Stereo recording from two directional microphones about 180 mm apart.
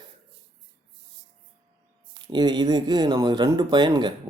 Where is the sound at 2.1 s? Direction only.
25° right (ahead or behind).